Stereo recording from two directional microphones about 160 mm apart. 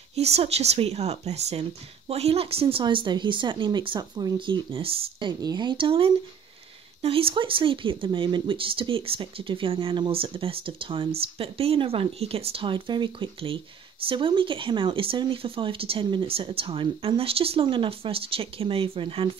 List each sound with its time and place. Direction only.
0.1 s speech: 40° right (ahead or behind)